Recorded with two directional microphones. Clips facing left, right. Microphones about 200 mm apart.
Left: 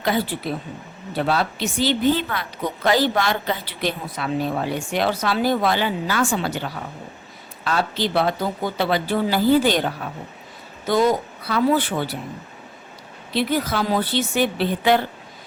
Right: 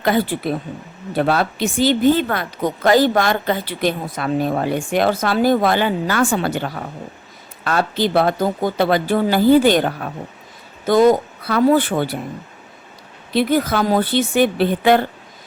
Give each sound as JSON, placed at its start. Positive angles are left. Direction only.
{"t": 0.0, "sound": "a woman's voice", "side_deg": -55}
{"t": 13.3, "sound": "a woman's voice", "side_deg": -50}